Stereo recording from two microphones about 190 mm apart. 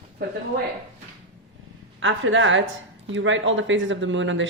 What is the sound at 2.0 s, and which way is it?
Speech, 85° right.